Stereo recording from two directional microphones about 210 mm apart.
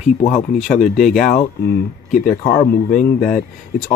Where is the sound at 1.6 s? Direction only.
45° left (ahead or behind).